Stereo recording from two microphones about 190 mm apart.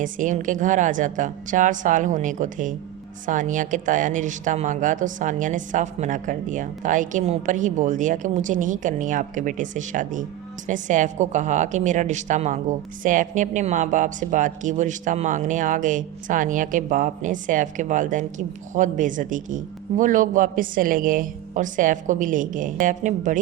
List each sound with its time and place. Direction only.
0.0 s a woman's voice: 40° right (ahead or behind)